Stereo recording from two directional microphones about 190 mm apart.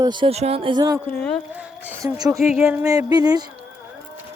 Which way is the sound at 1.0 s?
10° left (ahead or behind).